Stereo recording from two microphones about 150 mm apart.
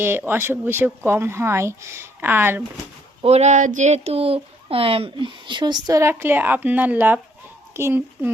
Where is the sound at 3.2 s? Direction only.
45° right (ahead or behind).